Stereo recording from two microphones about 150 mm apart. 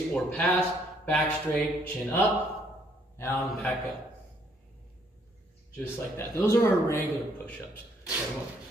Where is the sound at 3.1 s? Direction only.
15° left (ahead or behind).